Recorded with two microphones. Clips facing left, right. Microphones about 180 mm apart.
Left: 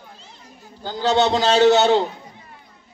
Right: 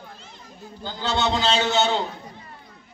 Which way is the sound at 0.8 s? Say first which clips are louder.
Left 7 dB; 45° left (ahead or behind).